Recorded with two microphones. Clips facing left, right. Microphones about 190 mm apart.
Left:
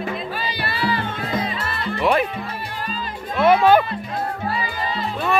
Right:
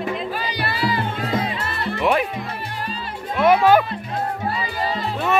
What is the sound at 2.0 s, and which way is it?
Speech, 15° right (ahead or behind).